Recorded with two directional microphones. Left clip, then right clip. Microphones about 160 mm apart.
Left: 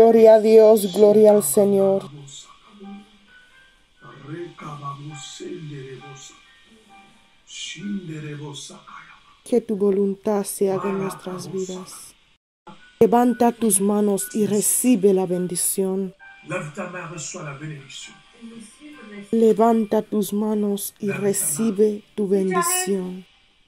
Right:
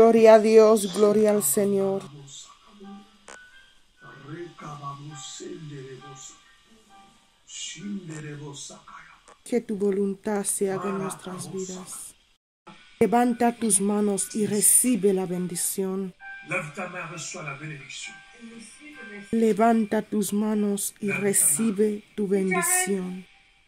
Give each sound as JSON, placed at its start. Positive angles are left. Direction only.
{"t": 0.0, "sound": "speech", "side_deg": 15}
{"t": 9.5, "sound": "speech", "side_deg": 15}
{"t": 11.3, "sound": "speech", "side_deg": -10}
{"t": 13.0, "sound": "music", "side_deg": 20}
{"t": 16.4, "sound": "speech", "side_deg": -5}
{"t": 19.3, "sound": "speech", "side_deg": 0}